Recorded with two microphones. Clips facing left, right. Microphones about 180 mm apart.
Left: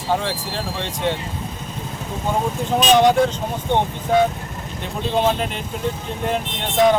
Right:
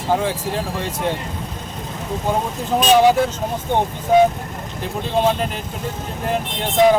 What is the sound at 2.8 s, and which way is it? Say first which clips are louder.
Speech: right 1 dB; 5° right (ahead or behind).